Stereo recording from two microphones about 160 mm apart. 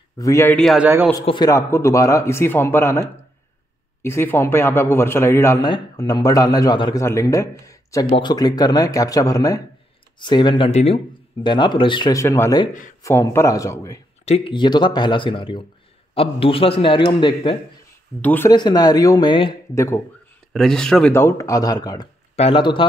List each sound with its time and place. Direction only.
0.2 s a man's voice: 15° left (ahead or behind)
0.6 s speech: centre (ahead or behind)
1.2 s a man's voice: 30° left (ahead or behind)
1.5 s a man's voice: 15° left (ahead or behind); by 11.0 s 40° left (ahead or behind)
11.4 s a man's voice: 30° left (ahead or behind)
14.2 s speech: 40° left (ahead or behind)
18.2 s a man's voice: 10° left (ahead or behind)
18.5 s a man's voice: 25° left (ahead or behind)
19.7 s a man's voice: 20° left (ahead or behind)
20.5 s speech: 5° left (ahead or behind)
21.1 s a man's voice: 15° left (ahead or behind)
22.3 s speech: 35° left (ahead or behind)